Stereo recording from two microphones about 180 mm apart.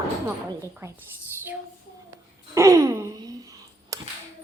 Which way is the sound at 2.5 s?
15° right (ahead or behind).